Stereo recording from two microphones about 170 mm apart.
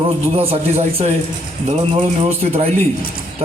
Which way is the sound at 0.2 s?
35° right (ahead or behind).